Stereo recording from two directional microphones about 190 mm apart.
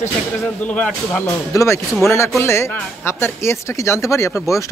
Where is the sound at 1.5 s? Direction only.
15° left (ahead or behind).